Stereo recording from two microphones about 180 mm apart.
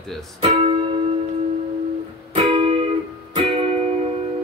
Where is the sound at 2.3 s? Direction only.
35° right (ahead or behind).